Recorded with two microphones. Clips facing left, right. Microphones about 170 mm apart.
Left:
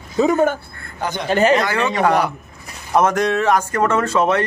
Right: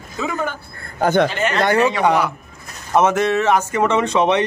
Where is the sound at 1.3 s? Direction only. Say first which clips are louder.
Left 7 dB; 40° left (ahead or behind).